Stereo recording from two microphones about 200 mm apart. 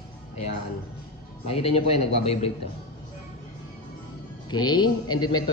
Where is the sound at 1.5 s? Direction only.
30° left (ahead or behind).